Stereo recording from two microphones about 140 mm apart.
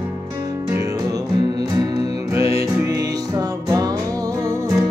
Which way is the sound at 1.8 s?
25° right (ahead or behind).